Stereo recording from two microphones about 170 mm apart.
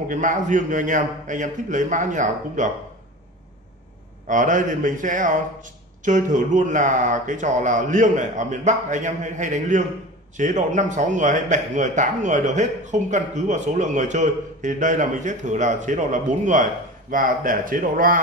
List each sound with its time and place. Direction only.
0.1 s a man's voice: 50° right (ahead or behind)
4.3 s a man's voice: 50° right (ahead or behind)